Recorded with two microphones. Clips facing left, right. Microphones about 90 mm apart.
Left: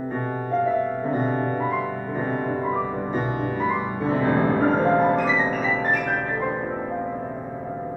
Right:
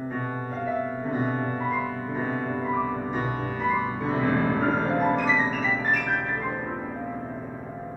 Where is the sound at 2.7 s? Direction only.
20° left (ahead or behind).